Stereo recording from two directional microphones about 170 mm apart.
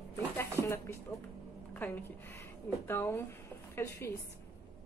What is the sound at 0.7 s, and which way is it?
A woman's voice, 15° left (ahead or behind).